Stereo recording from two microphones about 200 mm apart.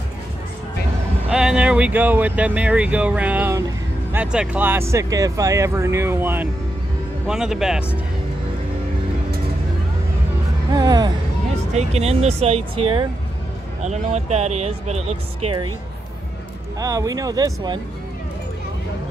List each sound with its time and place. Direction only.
1.3 s speech: 5° right (ahead or behind)
10.7 s speech: 20° right (ahead or behind)
11.7 s speech: 30° right (ahead or behind)
13.8 s speech: 35° right (ahead or behind)
16.8 s speech: 15° right (ahead or behind)